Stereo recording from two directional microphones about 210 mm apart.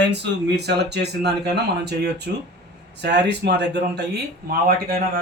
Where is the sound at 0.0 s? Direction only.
55° right (ahead or behind).